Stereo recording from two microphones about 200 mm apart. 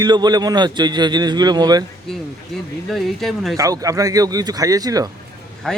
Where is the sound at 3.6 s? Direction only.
15° right (ahead or behind).